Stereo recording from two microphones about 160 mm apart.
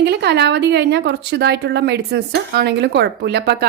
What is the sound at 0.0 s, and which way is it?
Speech, 90° right.